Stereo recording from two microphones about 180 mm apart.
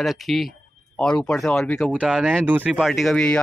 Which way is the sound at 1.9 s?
5° right (ahead or behind).